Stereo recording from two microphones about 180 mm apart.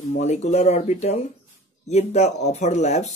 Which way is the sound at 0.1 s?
40° left (ahead or behind).